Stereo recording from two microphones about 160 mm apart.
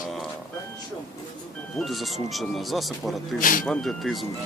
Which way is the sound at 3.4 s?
60° left (ahead or behind).